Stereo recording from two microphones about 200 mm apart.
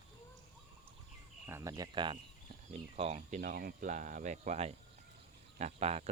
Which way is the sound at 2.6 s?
30° right (ahead or behind).